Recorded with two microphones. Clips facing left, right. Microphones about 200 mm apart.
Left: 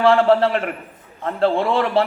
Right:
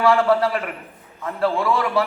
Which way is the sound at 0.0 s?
30° left (ahead or behind).